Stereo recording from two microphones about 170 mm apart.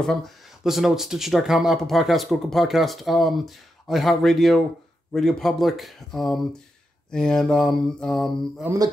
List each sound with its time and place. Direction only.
0.7 s speech: centre (ahead or behind)
8.6 s speech: 20° right (ahead or behind)